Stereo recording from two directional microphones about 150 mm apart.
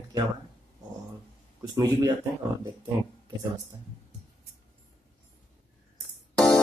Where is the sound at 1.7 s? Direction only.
25° right (ahead or behind).